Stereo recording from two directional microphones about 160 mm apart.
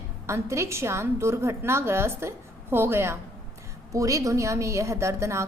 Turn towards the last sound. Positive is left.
turn(degrees=-15)  # may be behind; listen again after turning